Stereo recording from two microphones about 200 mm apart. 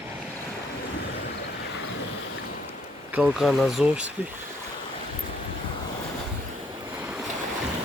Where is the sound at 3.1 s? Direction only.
5° right (ahead or behind).